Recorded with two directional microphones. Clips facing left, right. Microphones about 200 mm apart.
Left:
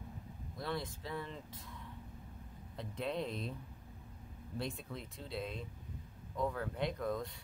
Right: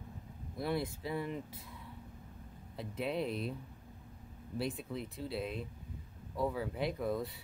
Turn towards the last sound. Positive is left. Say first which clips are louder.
# right 2 dB
turn(degrees=-5)  # may be behind; listen again after turning